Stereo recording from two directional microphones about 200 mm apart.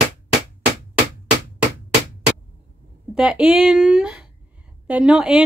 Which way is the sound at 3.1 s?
5° right (ahead or behind).